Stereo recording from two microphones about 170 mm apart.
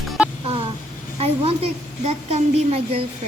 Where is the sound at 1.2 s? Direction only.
35° right (ahead or behind).